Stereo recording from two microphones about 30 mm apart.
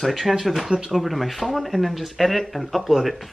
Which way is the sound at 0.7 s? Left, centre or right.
Right.